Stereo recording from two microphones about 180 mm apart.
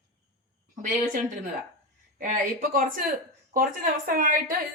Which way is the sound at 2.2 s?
50° right (ahead or behind).